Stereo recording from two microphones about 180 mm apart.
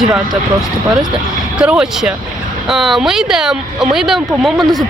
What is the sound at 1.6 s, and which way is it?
Speech, 5° right (ahead or behind).